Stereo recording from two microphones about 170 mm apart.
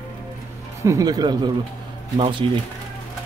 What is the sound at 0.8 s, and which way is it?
Speech, 20° right (ahead or behind).